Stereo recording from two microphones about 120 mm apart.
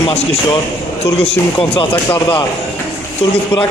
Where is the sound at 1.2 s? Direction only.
55° left (ahead or behind).